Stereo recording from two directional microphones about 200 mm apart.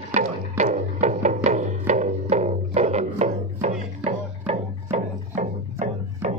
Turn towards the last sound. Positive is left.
turn(degrees=-35)  # may be behind; listen again after turning